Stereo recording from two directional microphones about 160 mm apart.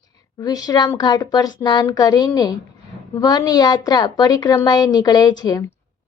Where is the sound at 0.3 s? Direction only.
25° left (ahead or behind).